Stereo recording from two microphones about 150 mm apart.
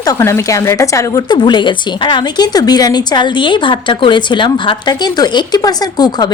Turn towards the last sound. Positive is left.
turn(degrees=25)  # may be behind; listen again after turning